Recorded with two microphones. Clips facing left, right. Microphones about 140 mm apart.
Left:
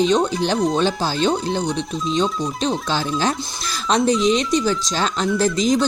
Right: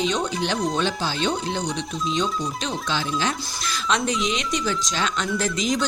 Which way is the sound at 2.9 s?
35° left (ahead or behind).